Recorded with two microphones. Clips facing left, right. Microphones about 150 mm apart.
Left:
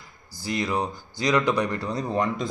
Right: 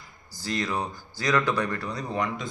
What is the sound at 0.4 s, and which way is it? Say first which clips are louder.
A man's voice: left 3 dB; 10° left (ahead or behind).